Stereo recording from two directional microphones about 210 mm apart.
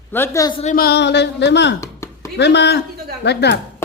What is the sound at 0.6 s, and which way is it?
Speech, 45° left (ahead or behind).